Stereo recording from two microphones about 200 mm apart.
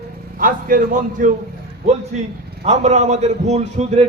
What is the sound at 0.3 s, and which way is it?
Speech, 45° right (ahead or behind).